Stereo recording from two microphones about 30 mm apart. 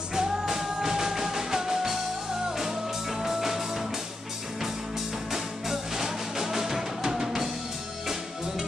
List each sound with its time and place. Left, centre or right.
0.1 s music: centre
5.3 s music: centre